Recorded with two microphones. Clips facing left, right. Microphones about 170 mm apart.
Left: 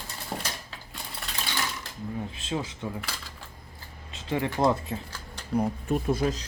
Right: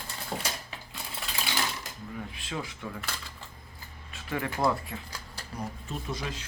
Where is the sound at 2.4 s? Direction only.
25° left (ahead or behind).